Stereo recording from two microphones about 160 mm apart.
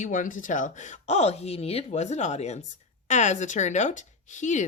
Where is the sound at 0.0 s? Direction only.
55° left (ahead or behind).